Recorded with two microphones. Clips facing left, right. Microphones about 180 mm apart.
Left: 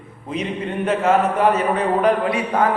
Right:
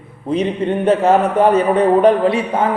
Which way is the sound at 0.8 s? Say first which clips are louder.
Right 4 dB; 30° right (ahead or behind).